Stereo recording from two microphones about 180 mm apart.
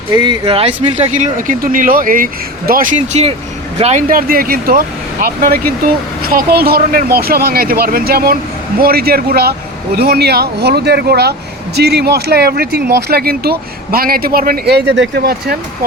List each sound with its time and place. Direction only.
0.1 s speech: 25° right (ahead or behind)
4.1 s speech: 55° right (ahead or behind)